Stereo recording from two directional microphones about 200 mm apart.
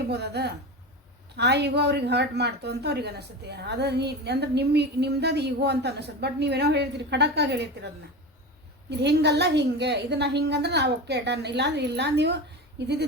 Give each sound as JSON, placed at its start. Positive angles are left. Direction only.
{"t": 0.1, "sound": "a woman's voice", "side_deg": -55}
{"t": 9.0, "sound": "a woman's voice", "side_deg": -60}